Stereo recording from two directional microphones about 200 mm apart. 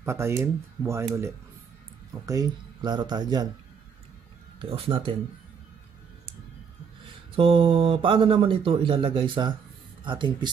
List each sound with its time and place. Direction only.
0.0 s speech: 15° right (ahead or behind)
4.6 s speech: 25° right (ahead or behind)
7.3 s speech: 25° right (ahead or behind)